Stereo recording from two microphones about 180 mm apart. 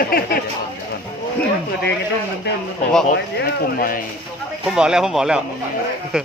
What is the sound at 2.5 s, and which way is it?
Speech, 70° left (ahead or behind).